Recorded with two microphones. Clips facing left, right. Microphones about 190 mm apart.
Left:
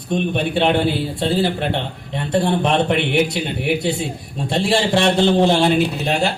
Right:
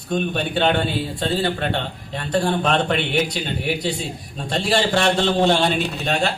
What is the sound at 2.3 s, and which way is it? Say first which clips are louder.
A man's voice: left 2 dB; 25° left (ahead or behind).